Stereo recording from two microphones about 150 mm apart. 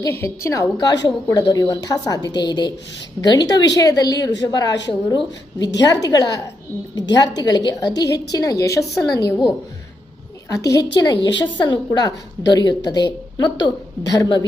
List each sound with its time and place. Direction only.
0.0 s a woman's voice: 20° left (ahead or behind)
10.5 s a woman's voice: 20° left (ahead or behind)